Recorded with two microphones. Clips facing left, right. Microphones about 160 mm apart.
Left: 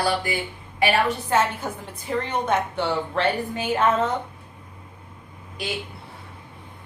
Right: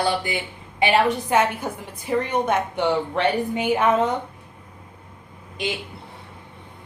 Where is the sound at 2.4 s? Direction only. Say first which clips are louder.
Right 2 dB; 15° right (ahead or behind).